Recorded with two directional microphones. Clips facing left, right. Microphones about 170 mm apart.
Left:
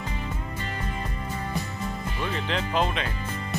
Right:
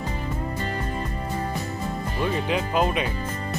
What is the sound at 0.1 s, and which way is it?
Music, 40° right (ahead or behind).